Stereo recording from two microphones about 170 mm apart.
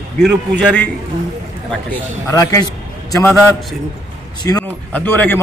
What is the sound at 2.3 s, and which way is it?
A man's voice, 20° left (ahead or behind).